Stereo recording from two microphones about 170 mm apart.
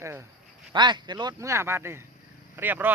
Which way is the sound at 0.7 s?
25° right (ahead or behind).